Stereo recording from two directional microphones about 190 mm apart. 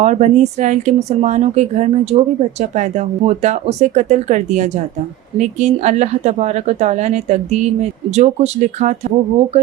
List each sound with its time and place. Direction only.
0.0 s a woman's voice: 40° right (ahead or behind)